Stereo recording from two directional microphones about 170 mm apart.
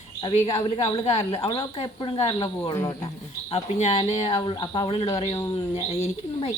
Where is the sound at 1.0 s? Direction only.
35° left (ahead or behind); by 3.1 s 20° left (ahead or behind).